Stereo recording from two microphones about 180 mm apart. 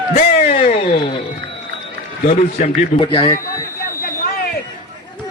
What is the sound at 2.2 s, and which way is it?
Speech, 40° left (ahead or behind).